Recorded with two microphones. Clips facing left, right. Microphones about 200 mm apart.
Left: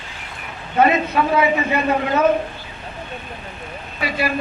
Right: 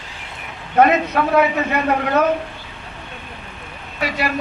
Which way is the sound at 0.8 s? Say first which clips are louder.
Right 2 dB; 70° right (ahead or behind).